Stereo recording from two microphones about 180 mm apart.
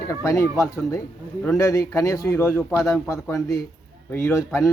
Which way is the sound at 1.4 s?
20° left (ahead or behind).